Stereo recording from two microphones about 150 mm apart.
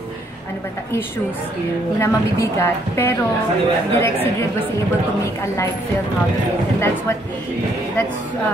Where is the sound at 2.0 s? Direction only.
20° left (ahead or behind).